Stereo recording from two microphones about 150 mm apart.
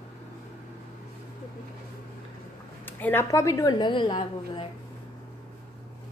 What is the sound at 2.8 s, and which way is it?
A woman's voice, 15° left (ahead or behind).